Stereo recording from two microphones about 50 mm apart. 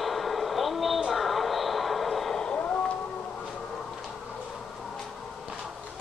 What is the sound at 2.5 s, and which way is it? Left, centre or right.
Music, left.